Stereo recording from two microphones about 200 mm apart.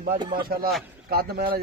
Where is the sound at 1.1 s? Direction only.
50° right (ahead or behind).